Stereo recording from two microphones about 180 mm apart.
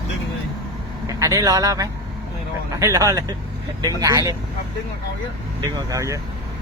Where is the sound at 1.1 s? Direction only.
15° right (ahead or behind).